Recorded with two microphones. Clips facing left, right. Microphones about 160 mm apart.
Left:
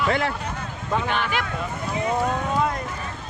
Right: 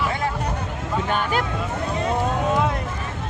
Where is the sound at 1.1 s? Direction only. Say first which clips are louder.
Right 3 dB; 40° right (ahead or behind).